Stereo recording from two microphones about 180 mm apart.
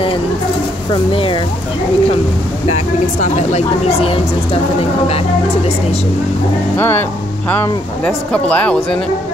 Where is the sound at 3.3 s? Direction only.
35° left (ahead or behind).